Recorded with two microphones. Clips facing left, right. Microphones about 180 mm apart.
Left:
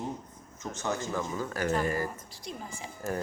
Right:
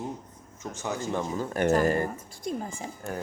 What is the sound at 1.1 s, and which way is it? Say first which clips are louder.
Speech: right 3 dB; 20° right (ahead or behind).